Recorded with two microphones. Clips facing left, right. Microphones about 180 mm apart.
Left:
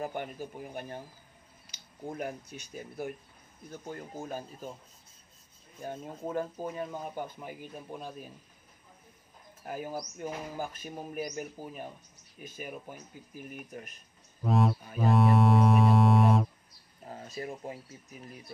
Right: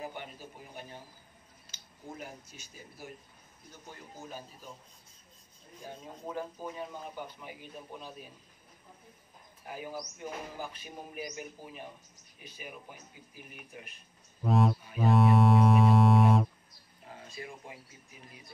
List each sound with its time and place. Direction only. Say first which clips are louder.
0.0 s speech: left 6 dB; 50° left (ahead or behind)
2.1 s speech: left 8 dB; 60° left (ahead or behind)
5.9 s speech: left 5 dB; 50° left (ahead or behind)
9.7 s speech: left 4 dB; 45° left (ahead or behind)
14.4 s a sound: even; centre (ahead or behind)
15.0 s music: even; centre (ahead or behind)
17.0 s speech: left 6 dB; 40° left (ahead or behind)